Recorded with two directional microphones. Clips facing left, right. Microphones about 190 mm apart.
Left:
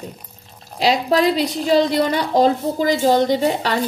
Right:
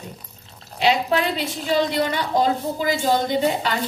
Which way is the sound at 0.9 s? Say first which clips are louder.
Left 4 dB; 35° left (ahead or behind).